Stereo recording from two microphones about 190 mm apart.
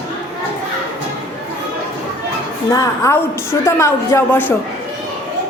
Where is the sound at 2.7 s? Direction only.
15° left (ahead or behind).